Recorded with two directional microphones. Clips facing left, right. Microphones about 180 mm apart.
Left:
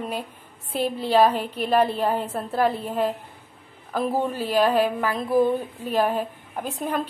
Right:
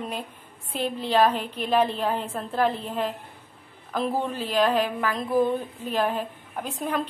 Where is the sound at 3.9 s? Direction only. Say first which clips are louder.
Left 2 dB; 10° left (ahead or behind).